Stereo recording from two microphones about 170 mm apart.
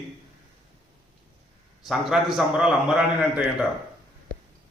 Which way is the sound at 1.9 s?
Centre (ahead or behind).